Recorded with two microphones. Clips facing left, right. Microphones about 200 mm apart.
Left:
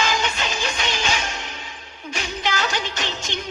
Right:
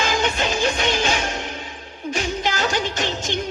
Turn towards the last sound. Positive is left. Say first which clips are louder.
# right 5 dB
turn(degrees=-50)  # may be behind; listen again after turning